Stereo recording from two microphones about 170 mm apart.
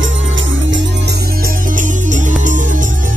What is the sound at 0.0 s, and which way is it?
Music, 90° right.